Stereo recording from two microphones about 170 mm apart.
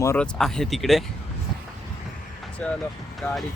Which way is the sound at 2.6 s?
5° left (ahead or behind).